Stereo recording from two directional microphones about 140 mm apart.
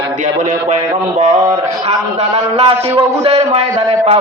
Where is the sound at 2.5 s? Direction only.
40° right (ahead or behind).